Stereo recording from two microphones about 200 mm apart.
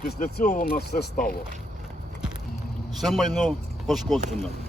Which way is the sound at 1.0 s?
50° left (ahead or behind).